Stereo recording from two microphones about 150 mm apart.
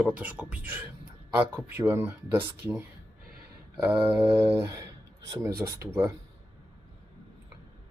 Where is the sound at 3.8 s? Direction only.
10° right (ahead or behind).